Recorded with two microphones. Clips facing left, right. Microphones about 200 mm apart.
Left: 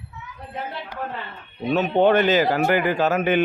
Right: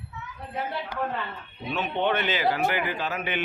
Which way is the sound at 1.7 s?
40° left (ahead or behind).